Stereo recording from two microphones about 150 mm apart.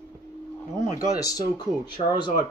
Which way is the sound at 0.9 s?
25° left (ahead or behind).